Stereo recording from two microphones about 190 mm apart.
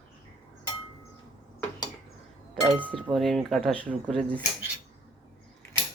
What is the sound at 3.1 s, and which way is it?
Speech, centre (ahead or behind).